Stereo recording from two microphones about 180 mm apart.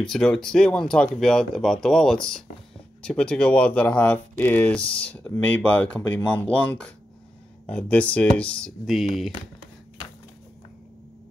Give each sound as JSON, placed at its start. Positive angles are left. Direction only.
{"t": 0.1, "sound": "speech", "side_deg": 5}